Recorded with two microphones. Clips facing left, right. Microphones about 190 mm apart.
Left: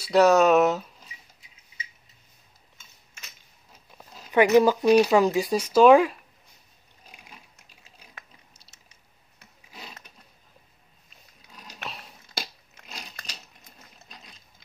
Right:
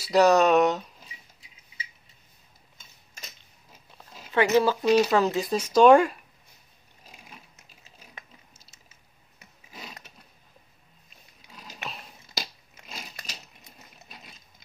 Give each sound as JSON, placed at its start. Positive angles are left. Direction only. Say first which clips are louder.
{"t": 0.0, "sound": "speech", "louder": "left 1 dB", "side_deg": 0}
{"t": 4.3, "sound": "speech", "louder": "left 4 dB", "side_deg": 15}
{"t": 11.5, "sound": "a sound", "louder": "even", "side_deg": -5}
{"t": 13.7, "sound": "sewing machine", "louder": "right 1 dB", "side_deg": -5}